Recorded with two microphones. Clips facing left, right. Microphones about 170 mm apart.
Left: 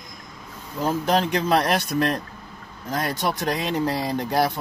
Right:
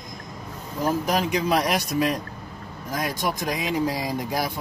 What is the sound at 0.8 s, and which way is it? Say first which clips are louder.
Speech: left 2 dB; 10° right (ahead or behind).